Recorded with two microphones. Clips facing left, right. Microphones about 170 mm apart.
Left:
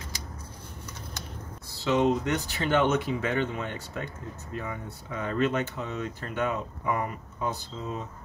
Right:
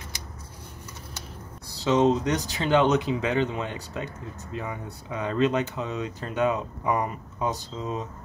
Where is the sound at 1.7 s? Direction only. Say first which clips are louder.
Right 3 dB; 20° right (ahead or behind).